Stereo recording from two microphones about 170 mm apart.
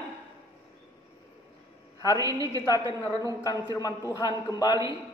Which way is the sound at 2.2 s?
20° right (ahead or behind).